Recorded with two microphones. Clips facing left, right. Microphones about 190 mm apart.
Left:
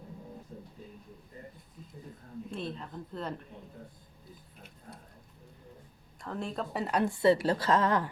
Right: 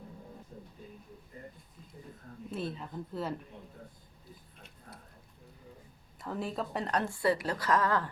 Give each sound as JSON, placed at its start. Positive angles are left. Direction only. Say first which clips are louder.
{"t": 2.5, "sound": "a woman's voice", "louder": "right 2 dB", "side_deg": -5}
{"t": 6.1, "sound": "a woman's voice", "louder": "even", "side_deg": -5}
{"t": 7.0, "sound": "a woman's voice", "louder": "left 8 dB", "side_deg": 20}